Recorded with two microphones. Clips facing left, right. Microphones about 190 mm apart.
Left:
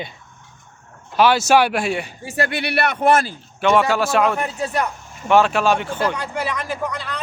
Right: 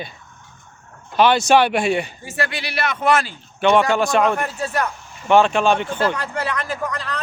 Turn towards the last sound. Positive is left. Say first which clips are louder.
# even
turn(degrees=10)  # may be behind; listen again after turning